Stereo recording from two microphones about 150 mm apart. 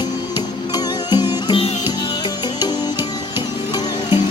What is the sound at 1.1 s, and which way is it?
Music, 30° left (ahead or behind).